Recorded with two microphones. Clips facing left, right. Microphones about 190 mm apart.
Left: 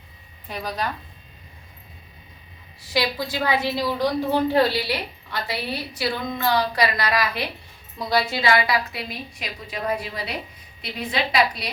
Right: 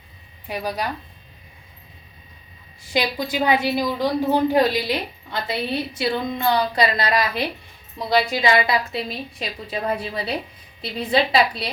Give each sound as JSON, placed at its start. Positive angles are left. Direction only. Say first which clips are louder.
{"t": 0.4, "sound": "speech", "louder": "right 2 dB", "side_deg": -10}
{"t": 2.9, "sound": "a woman's voice", "louder": "right 2 dB", "side_deg": -20}